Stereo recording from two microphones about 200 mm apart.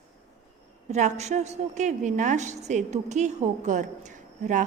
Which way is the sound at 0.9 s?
35° right (ahead or behind).